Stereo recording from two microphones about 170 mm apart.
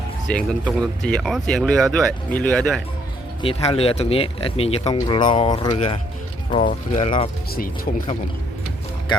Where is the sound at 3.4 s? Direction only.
35° left (ahead or behind).